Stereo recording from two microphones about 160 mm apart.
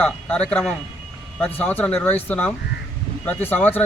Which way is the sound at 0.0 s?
5° left (ahead or behind).